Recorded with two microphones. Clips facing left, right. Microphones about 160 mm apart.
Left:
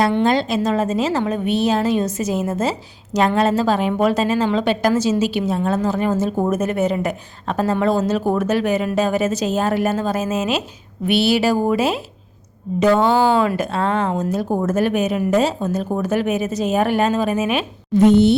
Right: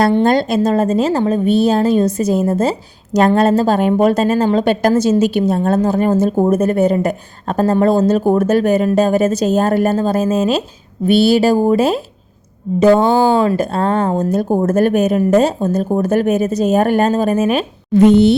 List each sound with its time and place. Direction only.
0.0 s a woman's voice: 40° right (ahead or behind)
6.3 s a woman's voice: 30° right (ahead or behind)
13.4 s a woman's voice: 35° right (ahead or behind)
17.9 s speech: 90° right